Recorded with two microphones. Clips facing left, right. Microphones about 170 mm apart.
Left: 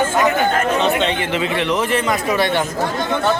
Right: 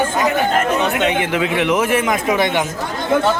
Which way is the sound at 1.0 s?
10° right (ahead or behind).